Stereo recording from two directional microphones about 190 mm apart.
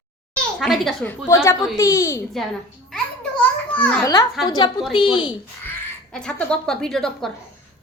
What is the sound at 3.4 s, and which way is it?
Children playing, 5° left (ahead or behind).